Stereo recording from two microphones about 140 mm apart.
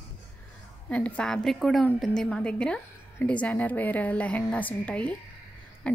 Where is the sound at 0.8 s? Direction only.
10° left (ahead or behind).